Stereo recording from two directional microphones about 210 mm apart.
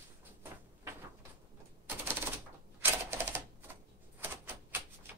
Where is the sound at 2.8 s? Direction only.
10° right (ahead or behind).